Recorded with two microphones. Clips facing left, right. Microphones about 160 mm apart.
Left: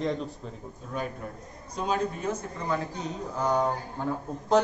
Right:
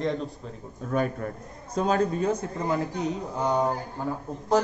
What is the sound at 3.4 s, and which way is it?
Speech, 15° right (ahead or behind).